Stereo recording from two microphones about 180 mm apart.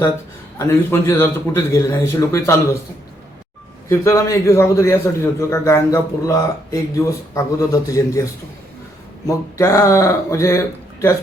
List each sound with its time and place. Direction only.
0.6 s a man's voice: 15° left (ahead or behind)
3.8 s a man's voice: 15° left (ahead or behind)